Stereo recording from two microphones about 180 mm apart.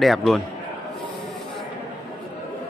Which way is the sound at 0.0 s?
Centre (ahead or behind).